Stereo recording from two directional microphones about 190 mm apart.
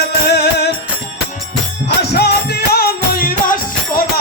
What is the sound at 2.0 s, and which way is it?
Music, 60° left (ahead or behind).